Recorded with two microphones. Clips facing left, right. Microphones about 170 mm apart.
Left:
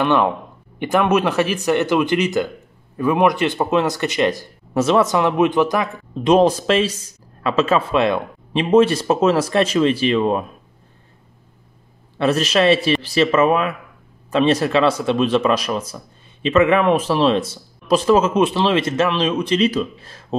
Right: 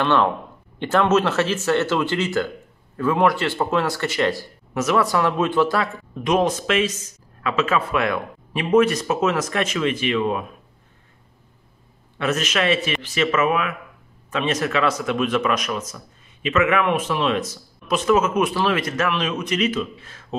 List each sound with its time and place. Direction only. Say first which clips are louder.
0.0 s speech: left 2 dB; 15° left (ahead or behind)
6.2 s speech: left 6 dB; 30° left (ahead or behind)
12.2 s speech: left 6 dB; 35° left (ahead or behind)